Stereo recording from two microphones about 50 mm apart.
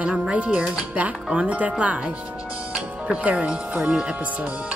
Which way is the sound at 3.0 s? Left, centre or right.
Right.